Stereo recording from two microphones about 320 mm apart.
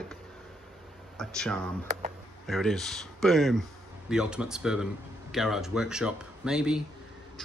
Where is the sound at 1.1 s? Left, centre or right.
Centre.